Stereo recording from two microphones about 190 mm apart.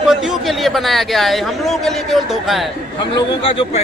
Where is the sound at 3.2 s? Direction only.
30° left (ahead or behind).